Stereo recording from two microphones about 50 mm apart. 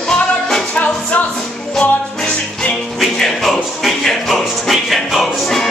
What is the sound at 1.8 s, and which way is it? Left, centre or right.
Music, centre.